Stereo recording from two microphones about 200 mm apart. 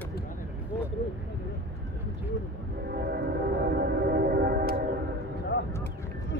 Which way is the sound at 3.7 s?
50° right (ahead or behind).